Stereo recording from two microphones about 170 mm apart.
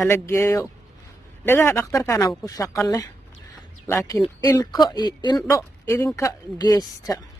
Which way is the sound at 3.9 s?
15° left (ahead or behind).